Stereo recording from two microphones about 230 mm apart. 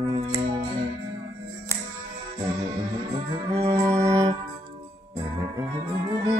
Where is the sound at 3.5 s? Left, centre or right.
Right.